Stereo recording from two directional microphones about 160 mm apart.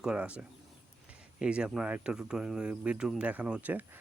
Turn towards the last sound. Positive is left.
turn(degrees=-10)  # may be behind; listen again after turning